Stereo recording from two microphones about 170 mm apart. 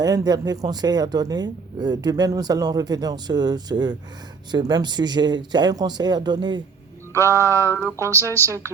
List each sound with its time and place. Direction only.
0.0 s speech: 20° right (ahead or behind)
7.1 s a sound: 15° right (ahead or behind)
8.1 s speech: 15° left (ahead or behind)